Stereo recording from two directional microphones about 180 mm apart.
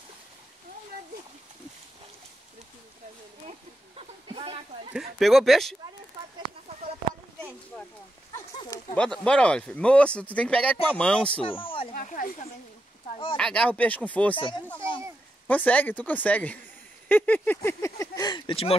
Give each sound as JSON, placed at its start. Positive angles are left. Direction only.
{"t": 3.4, "sound": "a sound", "side_deg": -30}
{"t": 5.2, "sound": "speech", "side_deg": 0}
{"t": 8.9, "sound": "speech", "side_deg": 5}
{"t": 11.6, "sound": "a sound", "side_deg": 30}
{"t": 11.9, "sound": "speech", "side_deg": 45}
{"t": 13.4, "sound": "speech", "side_deg": 5}
{"t": 14.3, "sound": "speech", "side_deg": 30}
{"t": 15.4, "sound": "speech", "side_deg": 10}